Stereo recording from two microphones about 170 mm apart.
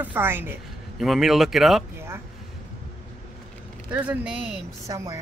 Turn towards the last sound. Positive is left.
turn(degrees=-25)  # may be behind; listen again after turning